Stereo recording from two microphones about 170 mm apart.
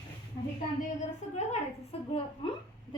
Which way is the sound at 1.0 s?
40° left (ahead or behind).